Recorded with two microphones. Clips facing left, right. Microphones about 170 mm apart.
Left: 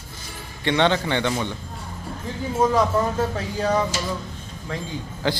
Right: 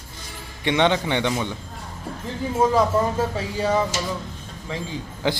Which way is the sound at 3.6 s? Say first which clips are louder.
Even; 5° right (ahead or behind).